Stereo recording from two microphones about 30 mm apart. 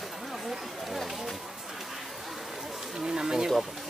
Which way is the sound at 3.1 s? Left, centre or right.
Right.